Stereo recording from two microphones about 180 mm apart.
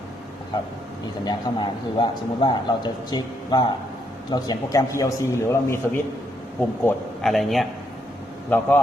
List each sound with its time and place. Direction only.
1.2 s a man's voice: 25° left (ahead or behind)
6.8 s a man's voice: centre (ahead or behind)